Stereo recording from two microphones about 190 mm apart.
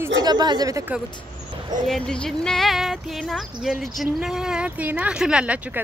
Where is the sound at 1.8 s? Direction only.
5° left (ahead or behind).